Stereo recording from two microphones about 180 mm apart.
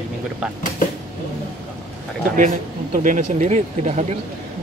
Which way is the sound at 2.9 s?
45° right (ahead or behind).